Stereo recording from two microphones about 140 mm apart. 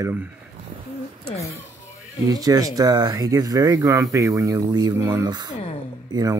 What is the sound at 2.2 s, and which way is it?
Speech, 25° right (ahead or behind).